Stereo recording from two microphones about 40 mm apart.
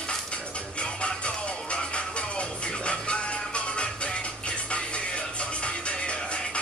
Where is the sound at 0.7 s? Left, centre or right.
Left.